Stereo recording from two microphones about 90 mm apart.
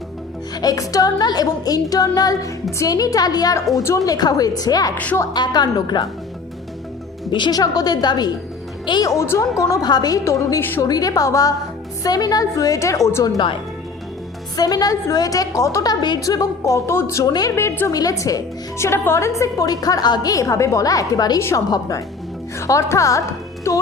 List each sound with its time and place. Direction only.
0.5 s a woman's voice: 45° left (ahead or behind)
7.3 s a woman's voice: 60° left (ahead or behind)
9.0 s a woman's voice: 30° left (ahead or behind)
9.6 s a woman's voice: 45° left (ahead or behind)
10.6 s a woman's voice: 25° left (ahead or behind)
10.8 s a woman's voice: 45° left (ahead or behind)
14.5 s a woman's voice: 45° left (ahead or behind)
16.2 s a woman's voice: 40° left (ahead or behind)
19.4 s a woman's voice: 40° left (ahead or behind)